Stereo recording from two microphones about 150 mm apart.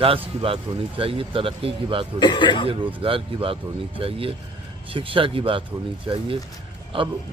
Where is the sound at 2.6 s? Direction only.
35° right (ahead or behind).